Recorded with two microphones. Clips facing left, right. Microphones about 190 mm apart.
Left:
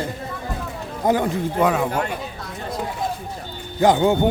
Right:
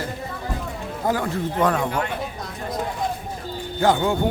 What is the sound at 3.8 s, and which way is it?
Speech, 20° left (ahead or behind).